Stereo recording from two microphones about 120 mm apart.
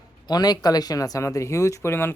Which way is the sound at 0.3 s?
35° left (ahead or behind).